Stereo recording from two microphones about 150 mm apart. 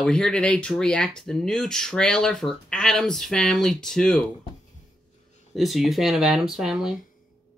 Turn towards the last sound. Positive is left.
turn(degrees=-5)  # may be behind; listen again after turning